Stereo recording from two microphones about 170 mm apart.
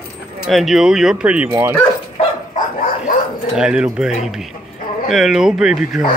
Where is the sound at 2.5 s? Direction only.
50° left (ahead or behind).